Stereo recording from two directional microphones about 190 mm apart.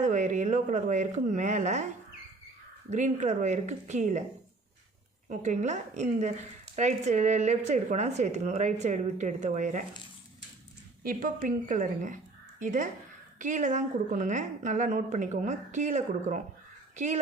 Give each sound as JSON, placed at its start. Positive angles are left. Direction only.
{"t": 0.0, "sound": "speech", "side_deg": -40}
{"t": 2.9, "sound": "speech", "side_deg": -40}
{"t": 5.3, "sound": "speech", "side_deg": -40}
{"t": 11.0, "sound": "speech", "side_deg": -50}